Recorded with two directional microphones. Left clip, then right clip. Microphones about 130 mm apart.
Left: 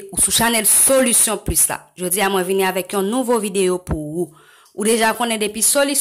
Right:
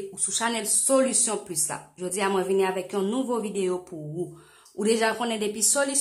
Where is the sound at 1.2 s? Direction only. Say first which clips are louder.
Left 8 dB; 35° left (ahead or behind).